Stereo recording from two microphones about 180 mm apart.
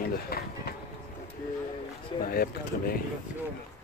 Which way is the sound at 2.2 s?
55° left (ahead or behind).